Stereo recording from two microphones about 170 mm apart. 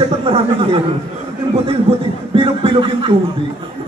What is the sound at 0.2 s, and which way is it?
Speech, 30° right (ahead or behind).